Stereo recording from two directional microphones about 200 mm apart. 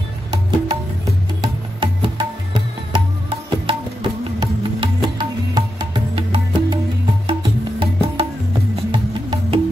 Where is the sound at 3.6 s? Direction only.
25° right (ahead or behind).